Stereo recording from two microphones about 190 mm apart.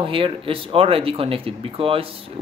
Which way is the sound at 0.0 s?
30° right (ahead or behind).